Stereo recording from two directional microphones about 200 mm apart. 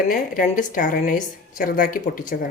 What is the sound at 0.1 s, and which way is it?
A woman's voice, 40° left (ahead or behind).